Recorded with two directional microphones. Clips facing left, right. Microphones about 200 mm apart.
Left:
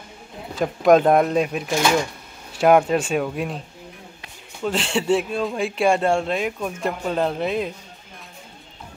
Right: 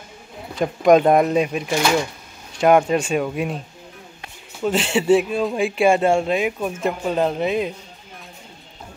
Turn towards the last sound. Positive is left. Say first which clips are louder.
# right 2 dB
turn(degrees=0)  # may be behind; listen again after turning